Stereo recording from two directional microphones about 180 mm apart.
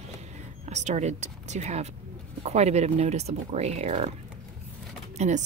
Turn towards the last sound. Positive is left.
turn(degrees=-40)  # may be behind; listen again after turning